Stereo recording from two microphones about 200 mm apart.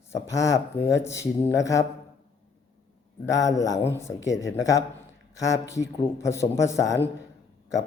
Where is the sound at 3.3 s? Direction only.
15° left (ahead or behind).